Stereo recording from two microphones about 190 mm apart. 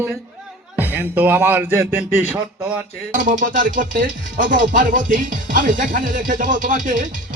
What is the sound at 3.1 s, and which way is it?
Music, 45° right (ahead or behind).